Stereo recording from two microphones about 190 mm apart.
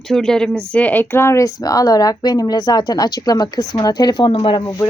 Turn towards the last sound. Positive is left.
turn(degrees=25)  # may be behind; listen again after turning